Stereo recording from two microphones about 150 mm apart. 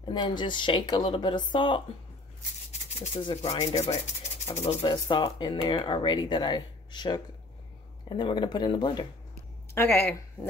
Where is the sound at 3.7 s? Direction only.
50° left (ahead or behind).